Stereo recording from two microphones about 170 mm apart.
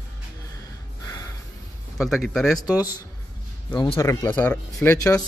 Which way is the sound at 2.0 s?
Centre (ahead or behind).